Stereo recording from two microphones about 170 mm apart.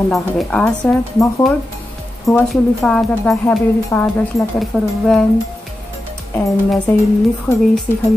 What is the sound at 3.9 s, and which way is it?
Speech, 15° left (ahead or behind).